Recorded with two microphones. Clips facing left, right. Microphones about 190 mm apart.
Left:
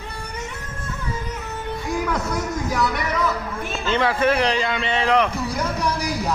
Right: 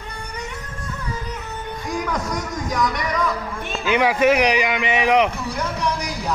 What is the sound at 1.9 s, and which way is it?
Speech, 5° left (ahead or behind).